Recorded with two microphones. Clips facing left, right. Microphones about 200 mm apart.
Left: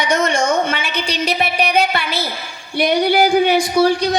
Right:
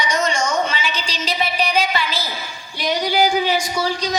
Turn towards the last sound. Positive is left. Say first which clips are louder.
# left 8 dB
turn(degrees=55)  # may be behind; listen again after turning